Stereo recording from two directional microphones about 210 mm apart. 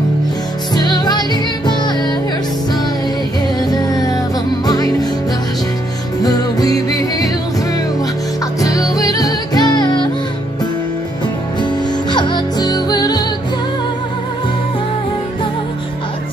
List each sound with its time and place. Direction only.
0.7 s music: 20° left (ahead or behind)
3.7 s music: 15° left (ahead or behind)
6.2 s music: 15° left (ahead or behind)
8.5 s music: 15° left (ahead or behind)
12.1 s music: 20° left (ahead or behind)